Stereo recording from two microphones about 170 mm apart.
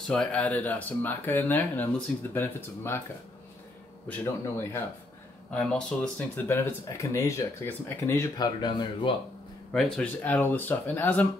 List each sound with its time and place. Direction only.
0.1 s speech: 5° left (ahead or behind)
4.1 s speech: 15° left (ahead or behind)
9.7 s speech: 5° left (ahead or behind)